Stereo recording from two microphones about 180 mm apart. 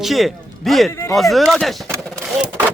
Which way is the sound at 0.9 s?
15° left (ahead or behind).